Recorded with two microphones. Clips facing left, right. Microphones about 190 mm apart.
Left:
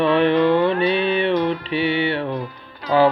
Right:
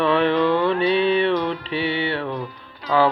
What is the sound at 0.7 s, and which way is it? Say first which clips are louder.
Music: even; 55° left (ahead or behind).